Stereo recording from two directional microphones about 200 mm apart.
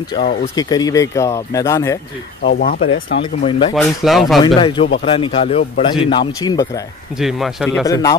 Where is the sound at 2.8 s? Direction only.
75° left (ahead or behind).